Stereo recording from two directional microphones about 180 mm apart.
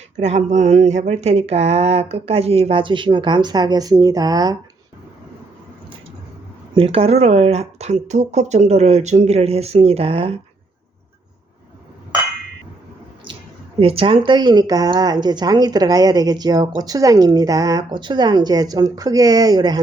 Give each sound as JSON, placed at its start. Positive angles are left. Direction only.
{"t": 0.2, "sound": "speech", "side_deg": -40}
{"t": 6.7, "sound": "speech", "side_deg": -30}
{"t": 13.3, "sound": "a sound", "side_deg": -30}
{"t": 13.7, "sound": "speech", "side_deg": -30}